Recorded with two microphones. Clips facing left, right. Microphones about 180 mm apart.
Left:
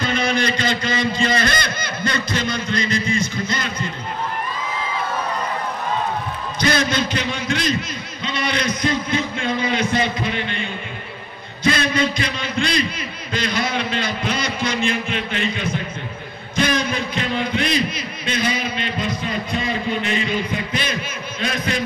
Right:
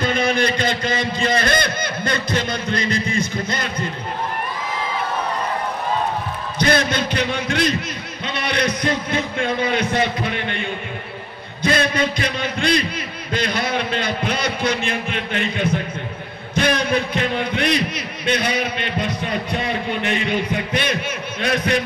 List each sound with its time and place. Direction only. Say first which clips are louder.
0.0 s a man's voice: right 2 dB; 55° right (ahead or behind)
6.6 s a man's voice: right 1 dB; 55° right (ahead or behind)
11.7 s a man's voice: right 2 dB; 55° right (ahead or behind)